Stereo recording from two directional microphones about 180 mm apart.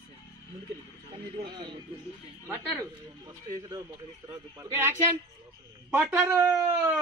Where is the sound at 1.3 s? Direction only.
25° right (ahead or behind).